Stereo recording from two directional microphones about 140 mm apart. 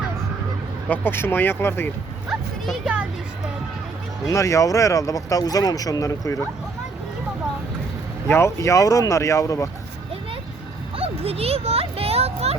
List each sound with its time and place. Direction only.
0.9 s speech: 15° left (ahead or behind)
2.6 s a child's voice: 10° right (ahead or behind)
4.3 s speech: 20° left (ahead or behind)
8.3 s speech: 20° left (ahead or behind)
10.9 s speech: 45° right (ahead or behind)